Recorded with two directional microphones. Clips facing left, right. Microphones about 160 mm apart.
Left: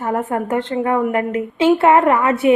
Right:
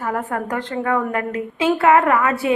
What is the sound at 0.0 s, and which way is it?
A woman's voice, 25° left (ahead or behind).